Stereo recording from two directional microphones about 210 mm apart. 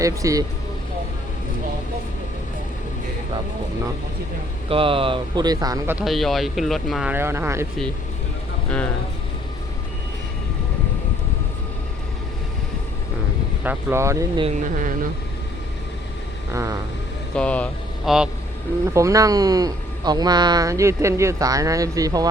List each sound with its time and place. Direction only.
0.0 s speech: 15° right (ahead or behind)
4.7 s speech: 25° right (ahead or behind)
6.1 s speech: centre (ahead or behind)
13.7 s speech: 15° right (ahead or behind)
14.4 s speech: 40° right (ahead or behind)
16.5 s speech: 15° right (ahead or behind)
17.3 s speech: 5° left (ahead or behind)
18.9 s speech: 15° right (ahead or behind)